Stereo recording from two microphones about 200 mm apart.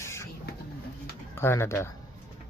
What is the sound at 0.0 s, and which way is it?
Printer, 15° left (ahead or behind).